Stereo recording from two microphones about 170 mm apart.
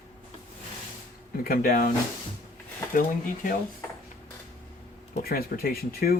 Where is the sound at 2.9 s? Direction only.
55° left (ahead or behind).